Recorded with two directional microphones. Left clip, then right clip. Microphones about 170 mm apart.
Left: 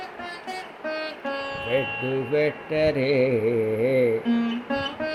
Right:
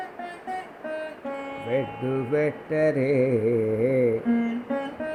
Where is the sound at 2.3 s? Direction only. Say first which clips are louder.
Left 1 dB; centre (ahead or behind).